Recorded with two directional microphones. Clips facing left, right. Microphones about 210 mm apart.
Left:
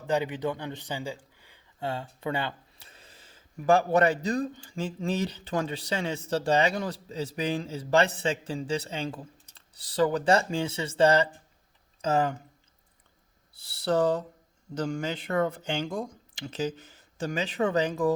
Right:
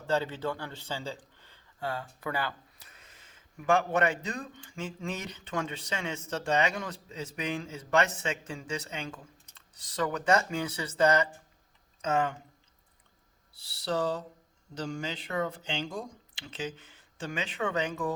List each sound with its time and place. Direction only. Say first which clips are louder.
0.1 s speech: left 2 dB; 15° left (ahead or behind); by 12.4 s 35° left (ahead or behind)
13.6 s speech: left 6 dB; 50° left (ahead or behind); by 18.1 s 35° left (ahead or behind)